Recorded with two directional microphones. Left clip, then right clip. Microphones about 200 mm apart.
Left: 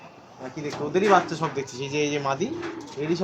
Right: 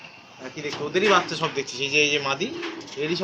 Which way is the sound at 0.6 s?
65° left (ahead or behind).